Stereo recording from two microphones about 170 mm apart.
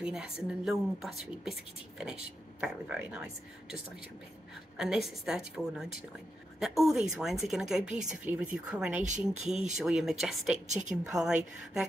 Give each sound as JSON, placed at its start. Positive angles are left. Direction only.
{"t": 0.0, "sound": "a woman's voice", "side_deg": -5}
{"t": 4.7, "sound": "a woman's voice", "side_deg": -5}
{"t": 10.7, "sound": "a woman's voice", "side_deg": -45}
{"t": 11.1, "sound": "a woman's voice", "side_deg": -5}